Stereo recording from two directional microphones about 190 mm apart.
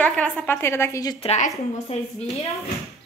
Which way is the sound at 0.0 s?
5° left (ahead or behind).